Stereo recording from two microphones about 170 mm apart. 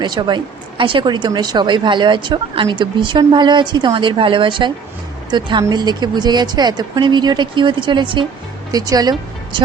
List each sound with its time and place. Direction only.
0.0 s speech: 25° right (ahead or behind)